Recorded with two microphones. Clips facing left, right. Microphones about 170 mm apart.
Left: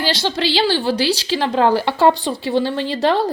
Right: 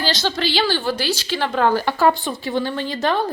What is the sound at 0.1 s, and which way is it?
A woman's voice, 30° left (ahead or behind).